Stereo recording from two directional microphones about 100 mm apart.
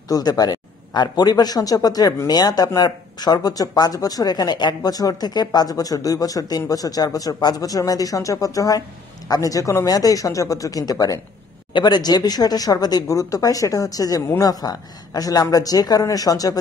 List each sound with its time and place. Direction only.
0.1 s a man's voice: 40° left (ahead or behind)